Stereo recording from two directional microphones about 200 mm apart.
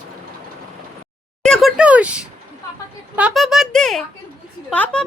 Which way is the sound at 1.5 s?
Centre (ahead or behind).